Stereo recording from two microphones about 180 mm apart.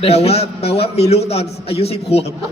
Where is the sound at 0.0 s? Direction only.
35° left (ahead or behind).